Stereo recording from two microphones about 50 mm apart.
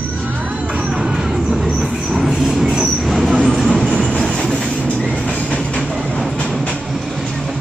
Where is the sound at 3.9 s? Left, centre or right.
Centre.